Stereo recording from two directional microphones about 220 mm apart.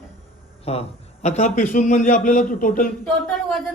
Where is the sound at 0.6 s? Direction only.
30° left (ahead or behind).